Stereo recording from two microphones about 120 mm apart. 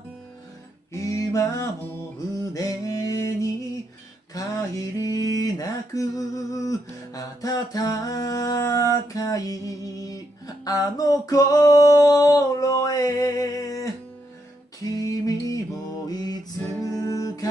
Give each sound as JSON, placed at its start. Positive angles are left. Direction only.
{"t": 0.9, "sound": "music", "side_deg": 25}
{"t": 4.3, "sound": "a sound", "side_deg": 30}
{"t": 9.0, "sound": "music", "side_deg": 30}
{"t": 14.9, "sound": "music", "side_deg": 30}